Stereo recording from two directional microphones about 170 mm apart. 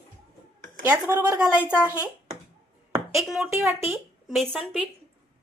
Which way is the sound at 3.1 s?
Centre (ahead or behind).